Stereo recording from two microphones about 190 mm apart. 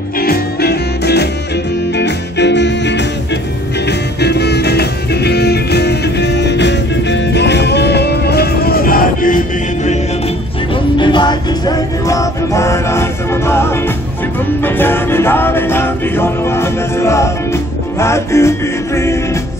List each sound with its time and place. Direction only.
0.2 s music: 55° left (ahead or behind)
4.2 s music: 60° left (ahead or behind)
11.0 s music: 25° left (ahead or behind)